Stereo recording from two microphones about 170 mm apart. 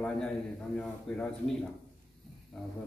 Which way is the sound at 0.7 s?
5° left (ahead or behind).